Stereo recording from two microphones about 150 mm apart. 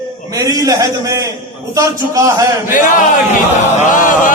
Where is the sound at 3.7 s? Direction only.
60° left (ahead or behind).